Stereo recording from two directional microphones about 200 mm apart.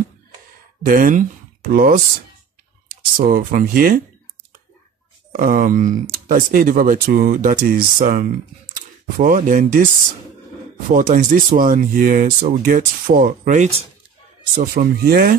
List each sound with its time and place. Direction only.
0.8 s speech: 45° right (ahead or behind)
3.2 s speech: 45° right (ahead or behind)
5.3 s speech: 45° right (ahead or behind)
10.9 s speech: 40° right (ahead or behind)
14.6 s speech: 50° right (ahead or behind)